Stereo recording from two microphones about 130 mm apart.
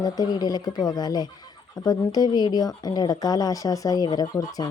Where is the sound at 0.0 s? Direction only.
30° left (ahead or behind).